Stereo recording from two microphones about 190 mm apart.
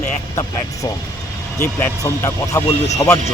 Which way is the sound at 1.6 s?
15° left (ahead or behind).